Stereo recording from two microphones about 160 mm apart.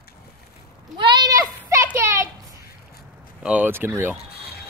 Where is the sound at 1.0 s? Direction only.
25° right (ahead or behind).